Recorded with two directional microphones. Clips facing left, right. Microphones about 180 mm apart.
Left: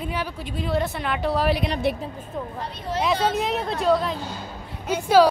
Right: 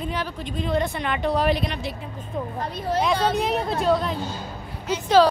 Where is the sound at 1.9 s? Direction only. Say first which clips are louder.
Left 9 dB; 65° left (ahead or behind).